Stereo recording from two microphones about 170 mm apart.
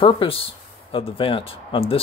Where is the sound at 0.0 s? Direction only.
35° left (ahead or behind).